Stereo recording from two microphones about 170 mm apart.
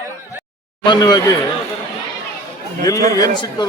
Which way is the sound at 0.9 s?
25° left (ahead or behind).